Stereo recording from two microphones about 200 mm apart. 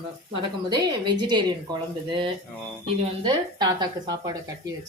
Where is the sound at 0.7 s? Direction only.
20° right (ahead or behind).